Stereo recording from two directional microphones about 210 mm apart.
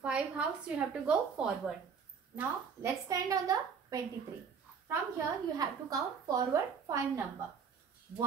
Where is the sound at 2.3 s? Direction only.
15° right (ahead or behind).